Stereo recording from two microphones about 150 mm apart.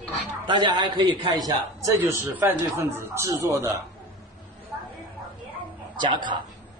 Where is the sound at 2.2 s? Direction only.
15° right (ahead or behind).